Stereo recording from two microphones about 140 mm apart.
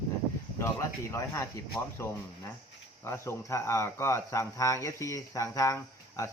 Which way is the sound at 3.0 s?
20° left (ahead or behind).